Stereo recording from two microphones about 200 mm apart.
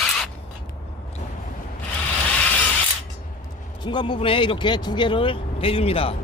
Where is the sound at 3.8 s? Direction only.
25° left (ahead or behind).